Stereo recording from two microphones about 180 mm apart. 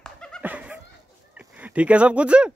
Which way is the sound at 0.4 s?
10° right (ahead or behind).